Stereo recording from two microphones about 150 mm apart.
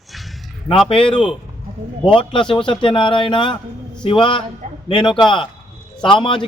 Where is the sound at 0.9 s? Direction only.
35° left (ahead or behind).